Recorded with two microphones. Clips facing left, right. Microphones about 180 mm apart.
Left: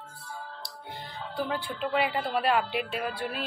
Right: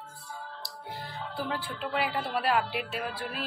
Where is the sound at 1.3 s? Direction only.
Centre (ahead or behind).